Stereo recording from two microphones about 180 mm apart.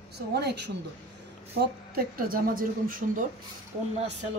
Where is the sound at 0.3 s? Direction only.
65° right (ahead or behind); by 3.3 s 50° right (ahead or behind).